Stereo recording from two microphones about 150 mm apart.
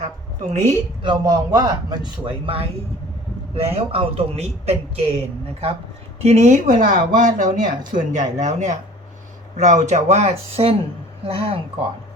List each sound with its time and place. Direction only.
0.5 s speech: 50° right (ahead or behind)
1.0 s a man's voice: 30° right (ahead or behind)
6.2 s a man's voice: 50° right (ahead or behind)